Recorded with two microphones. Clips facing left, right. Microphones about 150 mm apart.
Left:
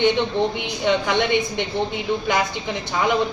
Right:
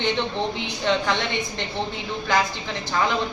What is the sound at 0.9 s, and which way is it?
Speech, 15° left (ahead or behind).